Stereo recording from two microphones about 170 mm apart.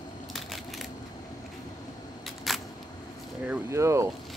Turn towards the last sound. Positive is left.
turn(degrees=-15)  # may be behind; listen again after turning